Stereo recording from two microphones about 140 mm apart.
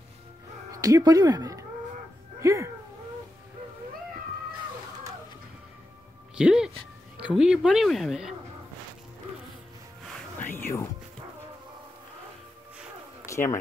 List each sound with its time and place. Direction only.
0.7 s speech: 25° right (ahead or behind)
6.3 s speech: 5° right (ahead or behind)
10.4 s music: 15° left (ahead or behind)
13.3 s speech: 20° left (ahead or behind)